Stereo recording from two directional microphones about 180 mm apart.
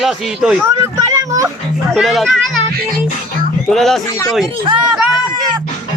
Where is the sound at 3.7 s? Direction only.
Centre (ahead or behind).